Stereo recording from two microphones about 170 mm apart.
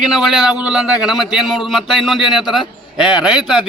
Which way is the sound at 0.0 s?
5° right (ahead or behind).